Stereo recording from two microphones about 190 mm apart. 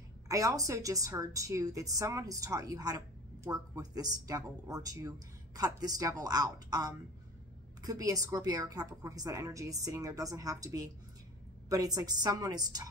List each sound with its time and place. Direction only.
0.3 s a woman's voice: 20° right (ahead or behind)